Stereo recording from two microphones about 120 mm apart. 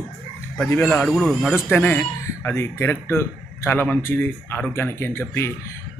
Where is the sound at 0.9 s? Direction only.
5° left (ahead or behind).